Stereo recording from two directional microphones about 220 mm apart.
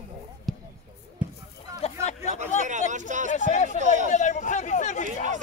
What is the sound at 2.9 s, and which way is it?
Speech, 35° right (ahead or behind).